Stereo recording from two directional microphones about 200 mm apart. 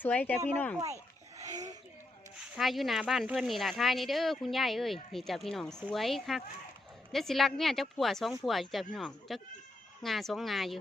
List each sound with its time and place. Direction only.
0.0 s speech: 10° left (ahead or behind)
1.4 s a sound: 15° right (ahead or behind)
2.6 s speech: centre (ahead or behind)